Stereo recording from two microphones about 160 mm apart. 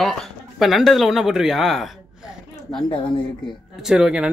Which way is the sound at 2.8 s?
30° left (ahead or behind).